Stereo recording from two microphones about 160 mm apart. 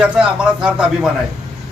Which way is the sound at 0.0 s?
5° right (ahead or behind).